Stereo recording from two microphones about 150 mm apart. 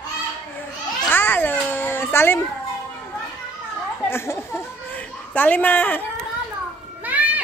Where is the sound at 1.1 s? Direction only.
15° left (ahead or behind).